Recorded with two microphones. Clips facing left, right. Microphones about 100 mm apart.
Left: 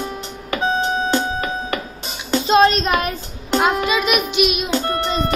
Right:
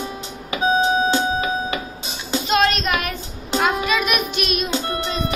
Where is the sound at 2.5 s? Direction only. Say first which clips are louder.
Left 5 dB; 30° left (ahead or behind).